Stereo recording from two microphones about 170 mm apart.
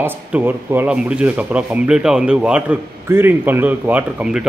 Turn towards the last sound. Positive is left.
turn(degrees=-5)  # may be behind; listen again after turning